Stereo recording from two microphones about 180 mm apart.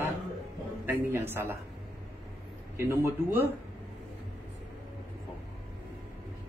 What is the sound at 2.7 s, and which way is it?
Speech, 15° right (ahead or behind).